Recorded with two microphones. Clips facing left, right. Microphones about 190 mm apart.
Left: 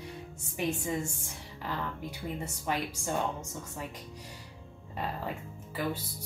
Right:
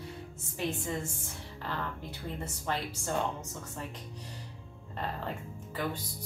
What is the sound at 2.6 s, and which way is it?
Speech, 10° left (ahead or behind).